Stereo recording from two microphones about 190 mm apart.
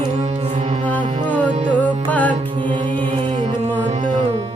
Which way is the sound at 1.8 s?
10° left (ahead or behind).